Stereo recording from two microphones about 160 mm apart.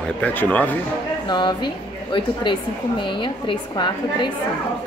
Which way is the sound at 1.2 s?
25° left (ahead or behind).